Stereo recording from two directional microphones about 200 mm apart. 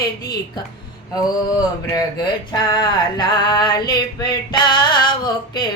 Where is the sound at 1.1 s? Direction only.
20° left (ahead or behind).